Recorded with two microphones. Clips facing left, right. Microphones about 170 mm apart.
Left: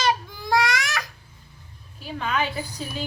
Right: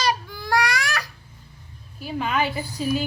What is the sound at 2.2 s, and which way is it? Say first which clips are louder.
Speech: right 2 dB; 5° right (ahead or behind).